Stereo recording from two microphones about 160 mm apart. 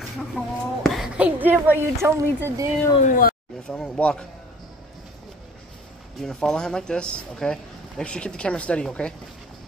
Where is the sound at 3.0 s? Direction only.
60° left (ahead or behind).